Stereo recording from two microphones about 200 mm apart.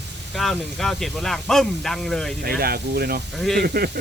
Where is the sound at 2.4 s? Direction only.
50° right (ahead or behind).